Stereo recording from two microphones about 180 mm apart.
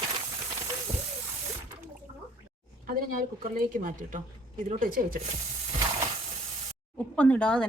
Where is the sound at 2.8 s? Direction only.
50° right (ahead or behind).